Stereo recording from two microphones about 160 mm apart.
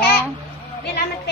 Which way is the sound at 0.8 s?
90° left.